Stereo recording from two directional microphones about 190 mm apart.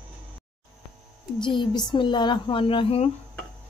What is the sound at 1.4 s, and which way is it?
Speech, 25° left (ahead or behind).